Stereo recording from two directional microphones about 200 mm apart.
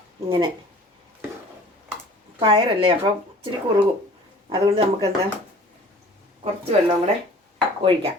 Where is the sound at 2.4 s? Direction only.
25° right (ahead or behind).